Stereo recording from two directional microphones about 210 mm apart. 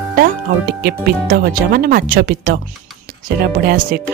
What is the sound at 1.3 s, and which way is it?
Speech, 45° right (ahead or behind).